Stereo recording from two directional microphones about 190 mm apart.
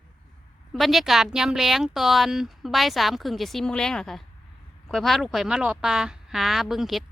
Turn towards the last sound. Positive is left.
turn(degrees=0)  # may be behind; listen again after turning